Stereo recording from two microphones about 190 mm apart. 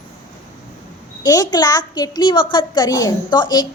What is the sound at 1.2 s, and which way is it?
A child's voice, 20° left (ahead or behind).